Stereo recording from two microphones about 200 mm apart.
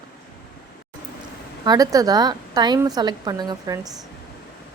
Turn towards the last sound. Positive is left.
turn(degrees=-20)  # may be behind; listen again after turning